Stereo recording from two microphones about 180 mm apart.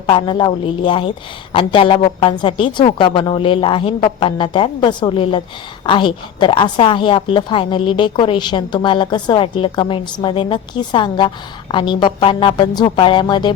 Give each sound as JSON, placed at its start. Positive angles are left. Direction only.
{"t": 0.0, "sound": "a woman's voice", "side_deg": 30}